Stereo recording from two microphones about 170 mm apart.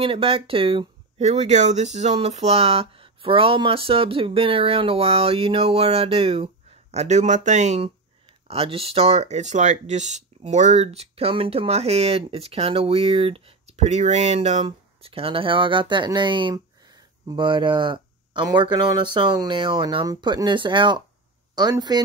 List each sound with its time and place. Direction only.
0.0 s speech: 35° right (ahead or behind)